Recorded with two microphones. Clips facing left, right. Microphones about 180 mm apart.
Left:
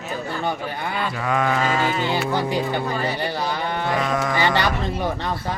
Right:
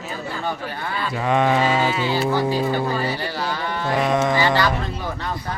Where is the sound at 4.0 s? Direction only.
25° right (ahead or behind).